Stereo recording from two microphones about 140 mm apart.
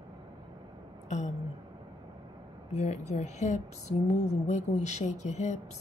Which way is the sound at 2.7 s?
55° left (ahead or behind).